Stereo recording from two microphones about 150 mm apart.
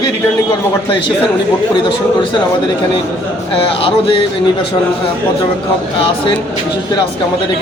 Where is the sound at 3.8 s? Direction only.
35° left (ahead or behind).